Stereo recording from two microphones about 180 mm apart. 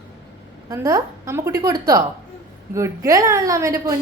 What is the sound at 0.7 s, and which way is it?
A woman's voice, 15° right (ahead or behind).